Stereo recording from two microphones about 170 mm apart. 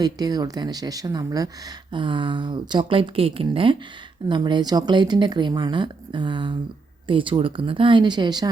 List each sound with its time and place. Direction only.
0.0 s speech: 25° right (ahead or behind)